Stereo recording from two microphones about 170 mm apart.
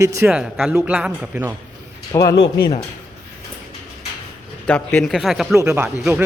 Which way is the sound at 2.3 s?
90° left.